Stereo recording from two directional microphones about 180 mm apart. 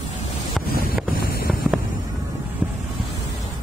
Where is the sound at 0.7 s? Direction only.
55° left (ahead or behind).